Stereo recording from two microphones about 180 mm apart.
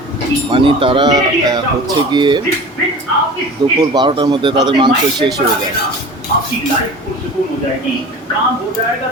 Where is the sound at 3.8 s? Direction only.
25° right (ahead or behind).